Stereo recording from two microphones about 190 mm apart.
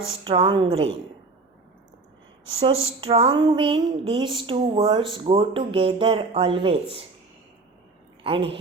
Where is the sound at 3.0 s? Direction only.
30° right (ahead or behind).